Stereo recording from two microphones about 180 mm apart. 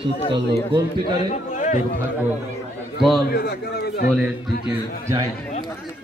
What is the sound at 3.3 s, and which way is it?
Speech, 60° left (ahead or behind).